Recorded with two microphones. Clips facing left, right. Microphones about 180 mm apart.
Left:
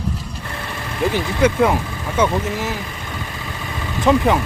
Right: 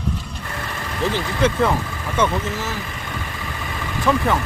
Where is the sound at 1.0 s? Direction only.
10° left (ahead or behind).